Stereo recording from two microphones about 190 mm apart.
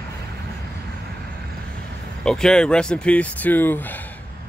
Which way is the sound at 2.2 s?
5° left (ahead or behind).